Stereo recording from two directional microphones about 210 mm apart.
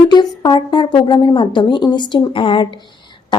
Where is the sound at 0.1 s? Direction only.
20° left (ahead or behind).